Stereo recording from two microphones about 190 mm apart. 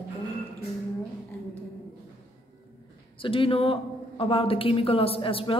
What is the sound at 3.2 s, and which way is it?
Speech, 30° left (ahead or behind).